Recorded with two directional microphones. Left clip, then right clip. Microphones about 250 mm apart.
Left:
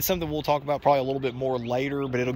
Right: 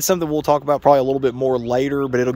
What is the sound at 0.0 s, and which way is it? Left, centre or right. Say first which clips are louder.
Speech: right 8 dB; right.